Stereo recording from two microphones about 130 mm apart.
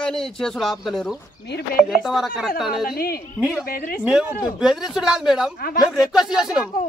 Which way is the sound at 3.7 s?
90° left.